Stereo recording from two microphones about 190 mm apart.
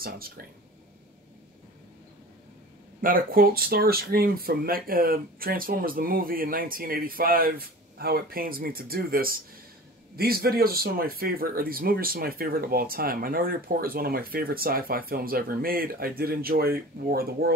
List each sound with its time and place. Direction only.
3.0 s speech: 50° right (ahead or behind)